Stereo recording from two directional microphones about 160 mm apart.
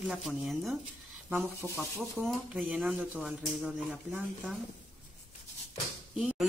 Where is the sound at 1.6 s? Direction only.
20° right (ahead or behind).